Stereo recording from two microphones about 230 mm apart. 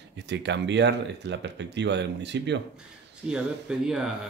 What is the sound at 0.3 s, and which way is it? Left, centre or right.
Speech, right.